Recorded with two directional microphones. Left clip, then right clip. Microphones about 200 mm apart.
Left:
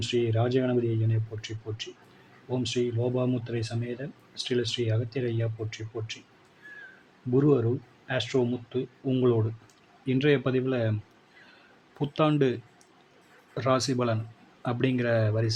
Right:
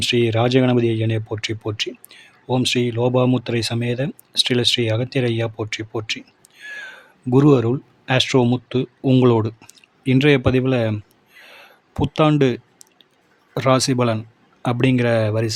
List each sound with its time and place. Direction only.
0.0 s speech: 45° right (ahead or behind)
7.3 s speech: 45° right (ahead or behind)
11.5 s a sound: 30° right (ahead or behind)
13.5 s speech: 30° right (ahead or behind)